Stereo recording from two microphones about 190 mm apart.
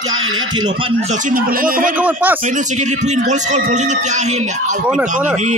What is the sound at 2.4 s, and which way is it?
Speech, 40° right (ahead or behind).